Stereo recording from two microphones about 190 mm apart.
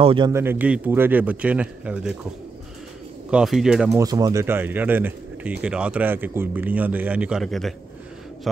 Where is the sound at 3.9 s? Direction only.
20° right (ahead or behind).